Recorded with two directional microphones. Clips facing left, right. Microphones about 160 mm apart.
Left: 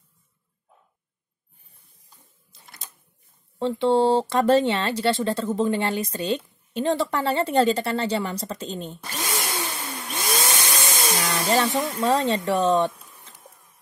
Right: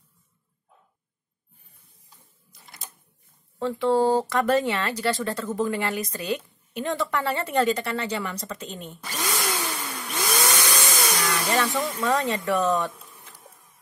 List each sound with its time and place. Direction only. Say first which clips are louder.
3.5 s speech: left 2 dB; 25° left (ahead or behind)
9.3 s vacuum cleaner: right 1 dB; 25° left (ahead or behind)